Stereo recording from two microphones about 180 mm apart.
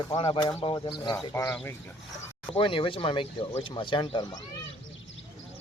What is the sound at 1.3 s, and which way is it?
Speech, 15° left (ahead or behind).